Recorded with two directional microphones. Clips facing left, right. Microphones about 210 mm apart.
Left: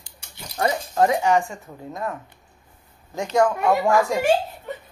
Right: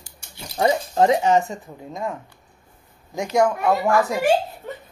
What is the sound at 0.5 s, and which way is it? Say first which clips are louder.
Speech: right 3 dB; 25° right (ahead or behind).